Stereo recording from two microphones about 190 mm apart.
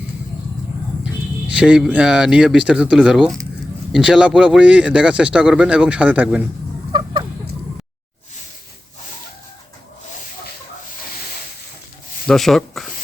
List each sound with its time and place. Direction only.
1.5 s a man's voice: 5° right (ahead or behind)
6.9 s a sound: 25° right (ahead or behind)
12.3 s a man's voice: centre (ahead or behind)